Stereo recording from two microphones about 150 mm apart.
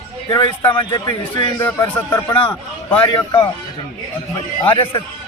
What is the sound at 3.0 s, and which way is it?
Speech, 30° left (ahead or behind).